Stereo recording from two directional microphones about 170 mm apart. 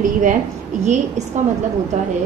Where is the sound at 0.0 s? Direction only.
50° right (ahead or behind).